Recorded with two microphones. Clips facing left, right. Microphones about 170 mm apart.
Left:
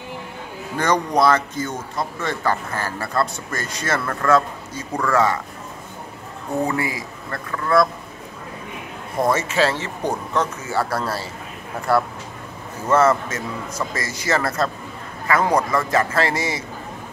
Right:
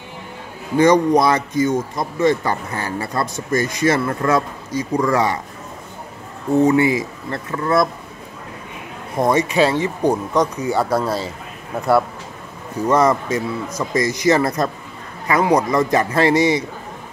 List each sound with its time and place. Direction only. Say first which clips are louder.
0.7 s a man's voice: right 6 dB; 10° right (ahead or behind)
6.6 s a man's voice: right 9 dB; 20° right (ahead or behind)
9.2 s speech: right 3 dB; 15° right (ahead or behind)
12.8 s a man's voice: right 1 dB; 15° right (ahead or behind)